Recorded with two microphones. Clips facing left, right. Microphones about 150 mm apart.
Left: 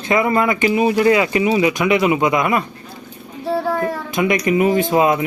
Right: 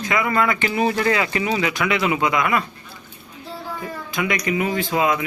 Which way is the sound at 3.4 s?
70° left (ahead or behind).